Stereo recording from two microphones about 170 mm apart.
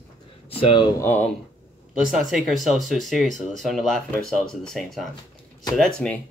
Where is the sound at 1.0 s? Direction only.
15° left (ahead or behind).